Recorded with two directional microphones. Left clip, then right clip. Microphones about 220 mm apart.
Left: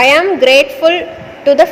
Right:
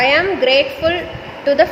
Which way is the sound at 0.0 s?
30° left (ahead or behind).